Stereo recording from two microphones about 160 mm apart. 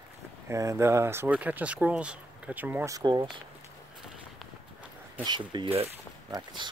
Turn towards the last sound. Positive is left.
turn(degrees=-30)  # may be behind; listen again after turning